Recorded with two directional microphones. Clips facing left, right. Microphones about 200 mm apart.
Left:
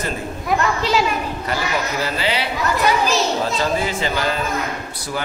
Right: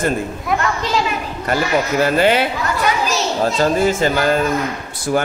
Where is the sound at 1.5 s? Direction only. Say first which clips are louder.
Right 7 dB; 50° right (ahead or behind).